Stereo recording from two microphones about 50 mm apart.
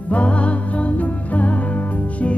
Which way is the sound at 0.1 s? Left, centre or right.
Left.